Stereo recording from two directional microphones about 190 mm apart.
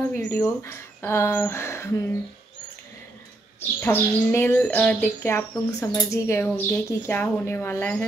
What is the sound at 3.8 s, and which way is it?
Speech, 10° left (ahead or behind).